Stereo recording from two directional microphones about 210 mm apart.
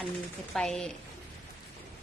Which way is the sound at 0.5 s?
Centre (ahead or behind).